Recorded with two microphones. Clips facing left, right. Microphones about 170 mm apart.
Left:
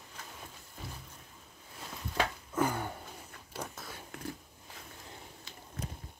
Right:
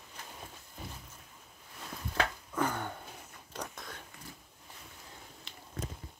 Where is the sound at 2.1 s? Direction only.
10° left (ahead or behind).